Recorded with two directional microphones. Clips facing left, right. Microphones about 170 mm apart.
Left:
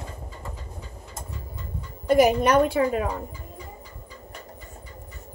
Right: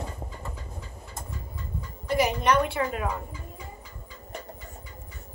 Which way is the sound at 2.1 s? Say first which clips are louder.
Left 6 dB; 45° left (ahead or behind).